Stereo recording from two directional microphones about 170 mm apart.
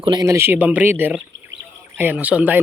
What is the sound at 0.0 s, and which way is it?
Speech, 25° right (ahead or behind).